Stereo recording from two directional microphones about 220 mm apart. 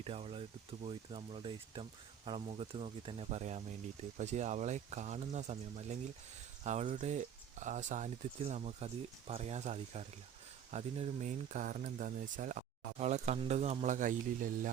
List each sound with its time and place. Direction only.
0.0 s speech: 25° right (ahead or behind)